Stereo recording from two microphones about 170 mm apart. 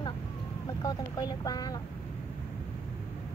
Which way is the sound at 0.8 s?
25° left (ahead or behind).